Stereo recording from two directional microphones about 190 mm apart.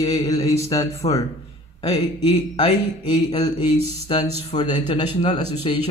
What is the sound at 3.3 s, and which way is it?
A man's voice, 20° left (ahead or behind).